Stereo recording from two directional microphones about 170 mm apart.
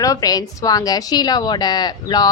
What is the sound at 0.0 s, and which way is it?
A woman's voice, 20° left (ahead or behind).